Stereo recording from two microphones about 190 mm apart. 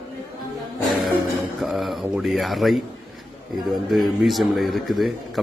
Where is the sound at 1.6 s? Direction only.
Centre (ahead or behind).